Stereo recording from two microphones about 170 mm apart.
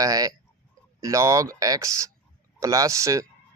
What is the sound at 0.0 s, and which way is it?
Speech, 20° right (ahead or behind).